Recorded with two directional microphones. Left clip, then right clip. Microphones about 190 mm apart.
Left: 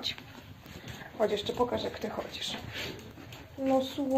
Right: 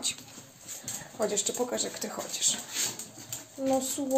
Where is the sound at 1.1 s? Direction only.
25° right (ahead or behind).